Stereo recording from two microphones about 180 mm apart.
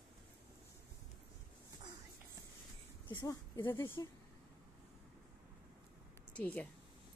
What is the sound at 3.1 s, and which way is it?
Speech, 20° left (ahead or behind).